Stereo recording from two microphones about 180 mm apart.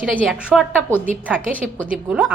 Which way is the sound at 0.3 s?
5° right (ahead or behind).